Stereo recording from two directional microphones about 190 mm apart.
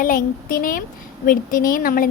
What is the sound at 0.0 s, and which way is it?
A woman's voice, 50° left (ahead or behind).